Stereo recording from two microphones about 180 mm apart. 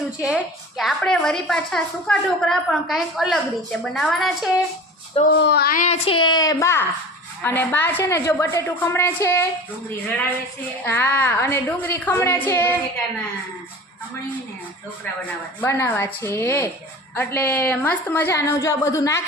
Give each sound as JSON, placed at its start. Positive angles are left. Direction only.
{"t": 0.2, "sound": "a woman's voice", "side_deg": -5}
{"t": 5.3, "sound": "speech", "side_deg": 65}
{"t": 6.1, "sound": "a woman's voice", "side_deg": 25}
{"t": 10.8, "sound": "a woman's voice", "side_deg": 10}
{"t": 15.6, "sound": "a woman's voice", "side_deg": 15}